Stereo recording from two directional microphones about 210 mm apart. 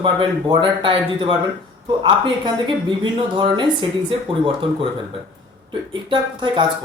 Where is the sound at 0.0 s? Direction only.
25° right (ahead or behind).